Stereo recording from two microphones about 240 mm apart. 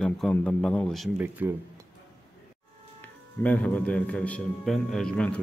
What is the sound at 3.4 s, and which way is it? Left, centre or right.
A man's voice, centre.